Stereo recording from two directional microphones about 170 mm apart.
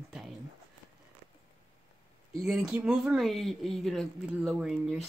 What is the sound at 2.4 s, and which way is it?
Speech, 5° right (ahead or behind).